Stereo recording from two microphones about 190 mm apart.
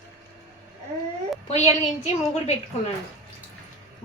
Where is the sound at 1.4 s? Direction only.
35° left (ahead or behind).